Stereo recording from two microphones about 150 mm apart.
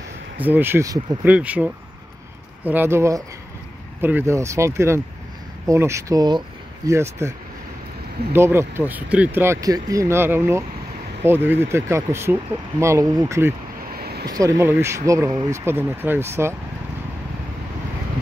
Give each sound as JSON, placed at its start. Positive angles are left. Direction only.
{"t": 0.4, "sound": "speech", "side_deg": -15}
{"t": 1.2, "sound": "speech", "side_deg": -10}
{"t": 13.9, "sound": "vehicle", "side_deg": -90}
{"t": 14.3, "sound": "speech", "side_deg": -20}